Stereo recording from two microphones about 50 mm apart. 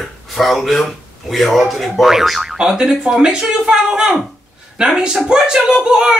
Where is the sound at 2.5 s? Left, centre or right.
Centre.